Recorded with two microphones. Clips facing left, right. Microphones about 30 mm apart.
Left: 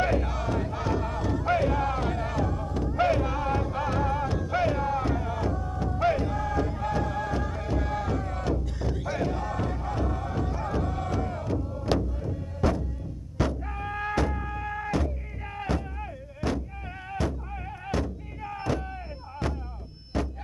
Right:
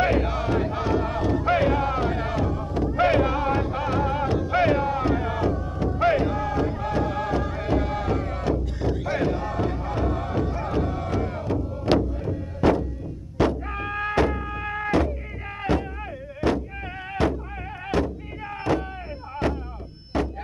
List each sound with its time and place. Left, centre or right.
0.0 s battle cry: right
0.8 s crowd: right
1.8 s a sound: right
3.1 s music: right
5.5 s a sound: right
6.3 s music: right
10.4 s music: right
11.1 s a sound: right
12.3 s music: right
16.3 s music: right
17.1 s music: right
17.8 s a sound: right
20.1 s music: right